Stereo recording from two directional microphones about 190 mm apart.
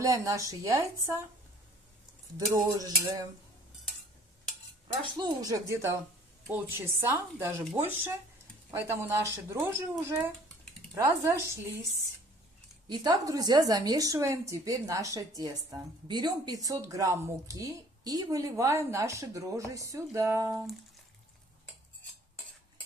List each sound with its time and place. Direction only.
0.0 s a woman's voice: 15° right (ahead or behind)
2.5 s speech: 20° right (ahead or behind)
5.1 s a woman's voice: 20° right (ahead or behind)
12.8 s a woman's voice: 20° right (ahead or behind)